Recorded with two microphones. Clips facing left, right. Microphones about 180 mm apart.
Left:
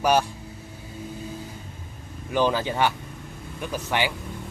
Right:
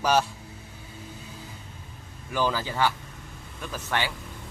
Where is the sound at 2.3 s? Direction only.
20° left (ahead or behind).